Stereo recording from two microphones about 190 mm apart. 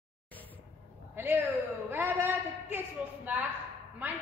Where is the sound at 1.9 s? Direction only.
10° right (ahead or behind).